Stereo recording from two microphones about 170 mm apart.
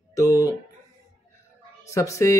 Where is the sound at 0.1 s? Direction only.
20° left (ahead or behind).